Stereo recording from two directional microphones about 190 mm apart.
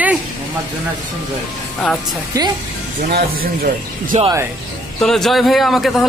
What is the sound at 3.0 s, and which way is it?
Speech, 55° right (ahead or behind).